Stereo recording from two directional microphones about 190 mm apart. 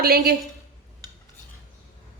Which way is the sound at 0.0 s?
55° right (ahead or behind).